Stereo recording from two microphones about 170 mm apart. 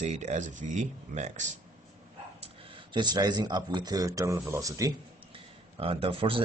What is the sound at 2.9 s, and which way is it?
Speech, 25° right (ahead or behind).